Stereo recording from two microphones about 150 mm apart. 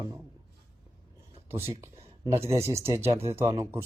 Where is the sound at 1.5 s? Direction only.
15° right (ahead or behind).